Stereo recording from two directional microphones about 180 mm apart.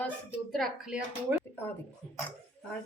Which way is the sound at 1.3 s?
15° right (ahead or behind).